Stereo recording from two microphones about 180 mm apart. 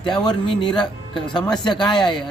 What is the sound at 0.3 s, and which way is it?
Speech, 25° left (ahead or behind).